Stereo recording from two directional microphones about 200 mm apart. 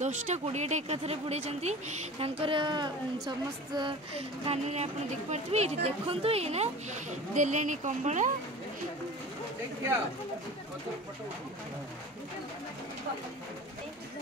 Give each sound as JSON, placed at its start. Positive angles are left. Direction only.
{"t": 0.0, "sound": "speech", "side_deg": -35}
{"t": 4.5, "sound": "speech", "side_deg": -35}